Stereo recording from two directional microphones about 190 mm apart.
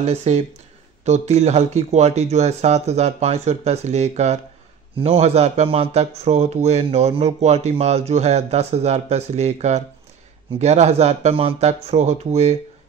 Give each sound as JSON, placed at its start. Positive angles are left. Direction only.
{"t": 0.0, "sound": "speech", "side_deg": -35}